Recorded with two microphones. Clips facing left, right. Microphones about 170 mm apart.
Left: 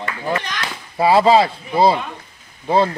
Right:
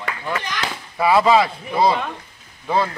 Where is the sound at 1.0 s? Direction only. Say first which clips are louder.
Left 2 dB; 30° left (ahead or behind).